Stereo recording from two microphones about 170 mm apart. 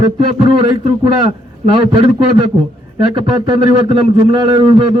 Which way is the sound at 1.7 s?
30° right (ahead or behind).